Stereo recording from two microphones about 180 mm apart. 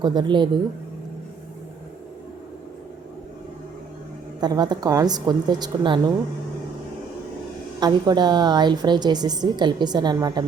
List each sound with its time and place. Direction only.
0.0 s a woman's voice: 25° right (ahead or behind)
4.4 s a woman's voice: 20° right (ahead or behind)
7.8 s a woman's voice: 25° right (ahead or behind)